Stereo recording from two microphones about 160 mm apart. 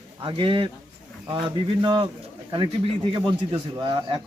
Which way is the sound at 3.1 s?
30° right (ahead or behind).